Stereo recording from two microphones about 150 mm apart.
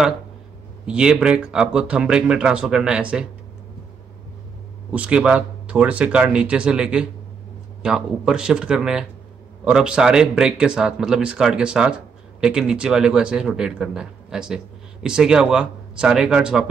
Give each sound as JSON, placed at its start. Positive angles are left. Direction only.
{"t": 0.8, "sound": "speech", "side_deg": -5}
{"t": 4.9, "sound": "speech", "side_deg": -10}